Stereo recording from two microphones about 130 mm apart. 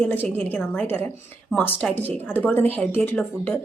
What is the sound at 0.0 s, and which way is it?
A woman's voice, 15° left (ahead or behind).